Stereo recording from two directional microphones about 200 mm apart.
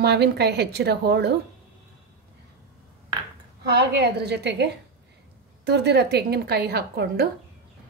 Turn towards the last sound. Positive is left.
turn(degrees=-50)  # may be behind; listen again after turning